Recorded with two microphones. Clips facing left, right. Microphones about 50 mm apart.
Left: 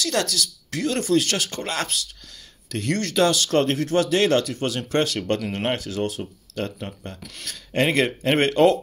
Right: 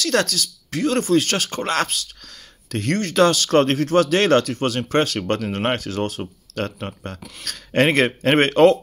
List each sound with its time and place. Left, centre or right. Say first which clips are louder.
0.0 s speech: right 3 dB; right